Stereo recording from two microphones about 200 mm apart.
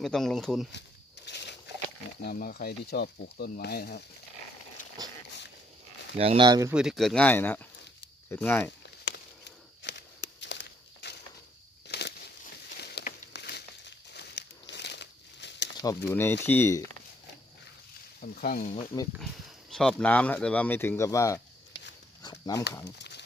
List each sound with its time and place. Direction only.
0.0 s speech: centre (ahead or behind)
0.7 s a sound: 60° left (ahead or behind)
2.2 s speech: 50° left (ahead or behind)
6.1 s speech: 30° right (ahead or behind)
6.7 s speech: 5° right (ahead or behind)
9.8 s walk: 60° left (ahead or behind)
11.9 s a sound: 55° left (ahead or behind)
12.6 s crumpling: 55° left (ahead or behind)
15.8 s speech: 15° left (ahead or behind)
18.2 s speech: 45° left (ahead or behind)
19.7 s speech: centre (ahead or behind)
22.2 s dog: 15° left (ahead or behind)
22.8 s a sound: 60° left (ahead or behind)